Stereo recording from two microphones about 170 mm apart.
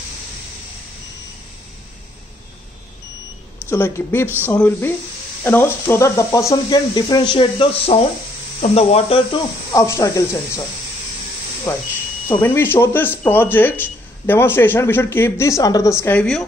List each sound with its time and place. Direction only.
3.6 s speech: 15° left (ahead or behind); by 9.4 s 35° left (ahead or behind)
9.7 s speech: 20° left (ahead or behind)
11.7 s speech: 20° left (ahead or behind)